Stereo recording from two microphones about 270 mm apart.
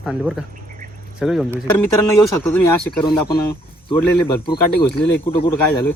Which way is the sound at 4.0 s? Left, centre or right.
Centre.